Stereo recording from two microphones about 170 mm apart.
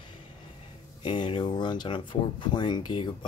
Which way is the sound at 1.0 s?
30° left (ahead or behind).